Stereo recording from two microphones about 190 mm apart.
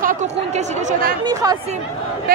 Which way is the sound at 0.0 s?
40° right (ahead or behind).